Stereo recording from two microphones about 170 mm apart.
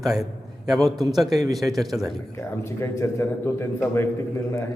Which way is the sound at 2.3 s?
15° left (ahead or behind).